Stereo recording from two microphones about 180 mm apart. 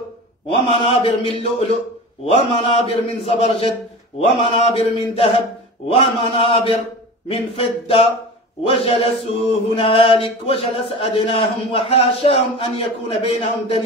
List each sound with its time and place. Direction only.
0.7 s chant: 30° left (ahead or behind)
5.9 s a man's voice: 30° left (ahead or behind)
7.2 s chant: 30° left (ahead or behind)